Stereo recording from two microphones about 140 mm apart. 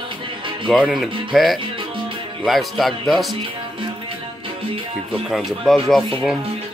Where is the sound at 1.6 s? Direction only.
40° right (ahead or behind).